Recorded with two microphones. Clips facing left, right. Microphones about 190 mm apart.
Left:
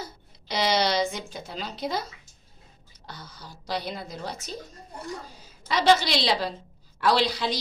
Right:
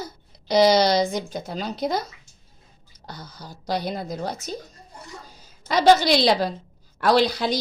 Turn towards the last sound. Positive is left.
turn(degrees=-45)  # may be behind; listen again after turning